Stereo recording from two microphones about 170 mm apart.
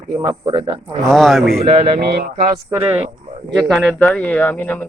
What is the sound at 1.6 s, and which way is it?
Speech, 35° right (ahead or behind).